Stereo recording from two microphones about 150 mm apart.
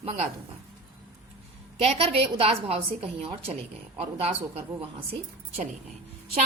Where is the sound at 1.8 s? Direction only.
40° right (ahead or behind).